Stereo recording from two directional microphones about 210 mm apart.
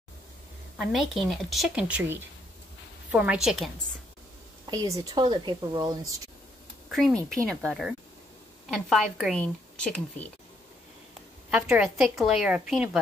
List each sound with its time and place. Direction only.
0.7 s a woman's voice: centre (ahead or behind)
4.6 s speech: 15° right (ahead or behind)
6.9 s a woman's voice: centre (ahead or behind)
11.5 s a woman's voice: 5° right (ahead or behind)